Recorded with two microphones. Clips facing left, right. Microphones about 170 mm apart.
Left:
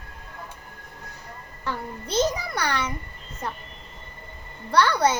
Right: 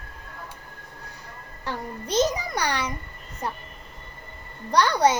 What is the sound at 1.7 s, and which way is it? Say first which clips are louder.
A woman's voice: right 1 dB; 15° right (ahead or behind).